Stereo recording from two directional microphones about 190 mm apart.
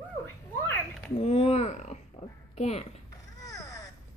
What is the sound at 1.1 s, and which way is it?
A woman's voice, 35° left (ahead or behind).